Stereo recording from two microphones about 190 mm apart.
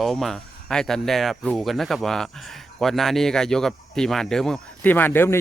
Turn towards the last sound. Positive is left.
turn(degrees=10)  # may be behind; listen again after turning